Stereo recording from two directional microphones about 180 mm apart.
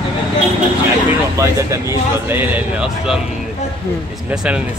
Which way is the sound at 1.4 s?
15° right (ahead or behind).